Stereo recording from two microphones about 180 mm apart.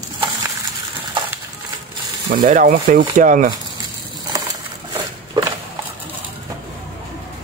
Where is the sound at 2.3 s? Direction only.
50° right (ahead or behind).